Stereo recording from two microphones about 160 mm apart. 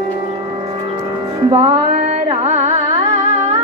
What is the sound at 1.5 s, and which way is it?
Carnatic music, 40° right (ahead or behind).